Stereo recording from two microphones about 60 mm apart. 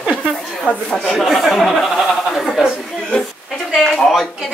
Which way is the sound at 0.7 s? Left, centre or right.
Centre.